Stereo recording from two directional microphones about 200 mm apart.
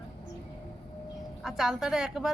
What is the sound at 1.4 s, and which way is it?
Speech, centre (ahead or behind).